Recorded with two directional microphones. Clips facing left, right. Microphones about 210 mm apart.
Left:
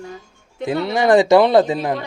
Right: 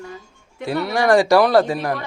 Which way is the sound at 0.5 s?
20° left (ahead or behind).